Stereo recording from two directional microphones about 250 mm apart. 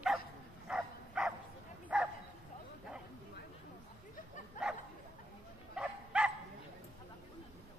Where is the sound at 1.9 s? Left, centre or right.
Centre.